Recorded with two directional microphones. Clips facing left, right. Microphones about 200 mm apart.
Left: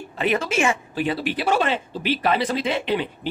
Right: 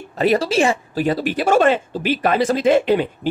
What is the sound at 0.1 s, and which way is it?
Speech, 40° right (ahead or behind).